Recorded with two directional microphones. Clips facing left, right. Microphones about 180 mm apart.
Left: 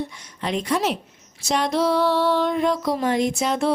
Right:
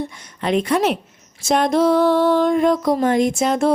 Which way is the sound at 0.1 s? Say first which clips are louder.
Right 6 dB; 55° right (ahead or behind).